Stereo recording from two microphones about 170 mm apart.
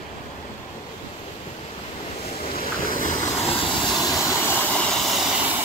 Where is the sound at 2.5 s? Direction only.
55° left (ahead or behind).